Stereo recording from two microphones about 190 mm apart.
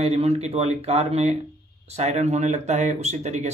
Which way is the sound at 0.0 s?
35° right (ahead or behind).